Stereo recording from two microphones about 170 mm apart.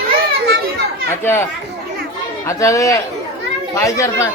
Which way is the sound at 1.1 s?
15° left (ahead or behind).